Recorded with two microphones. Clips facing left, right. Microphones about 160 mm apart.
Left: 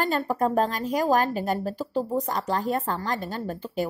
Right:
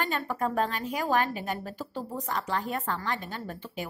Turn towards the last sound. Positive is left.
turn(degrees=35)  # may be behind; listen again after turning